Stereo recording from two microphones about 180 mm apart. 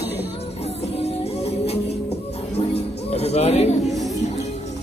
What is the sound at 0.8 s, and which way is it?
Music, 35° left (ahead or behind).